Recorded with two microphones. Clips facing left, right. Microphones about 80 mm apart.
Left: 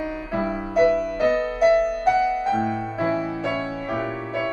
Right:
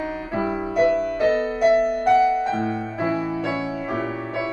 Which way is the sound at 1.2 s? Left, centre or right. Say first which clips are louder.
Even; centre.